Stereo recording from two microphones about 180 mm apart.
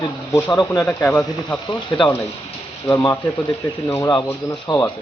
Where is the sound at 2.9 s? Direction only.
10° left (ahead or behind).